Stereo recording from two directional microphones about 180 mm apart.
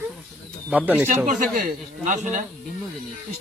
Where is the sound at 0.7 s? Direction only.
10° right (ahead or behind).